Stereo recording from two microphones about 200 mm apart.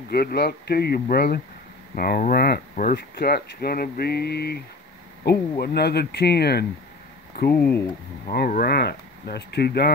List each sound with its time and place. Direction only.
0.1 s speech: 50° left (ahead or behind)